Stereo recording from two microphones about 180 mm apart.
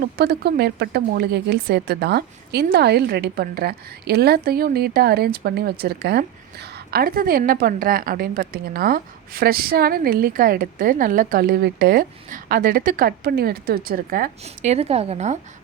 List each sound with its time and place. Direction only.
0.0 s speech: 60° right (ahead or behind)
14.4 s speech: 35° right (ahead or behind)